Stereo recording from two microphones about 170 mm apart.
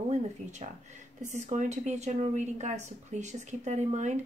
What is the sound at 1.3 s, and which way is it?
A woman's voice, 45° right (ahead or behind).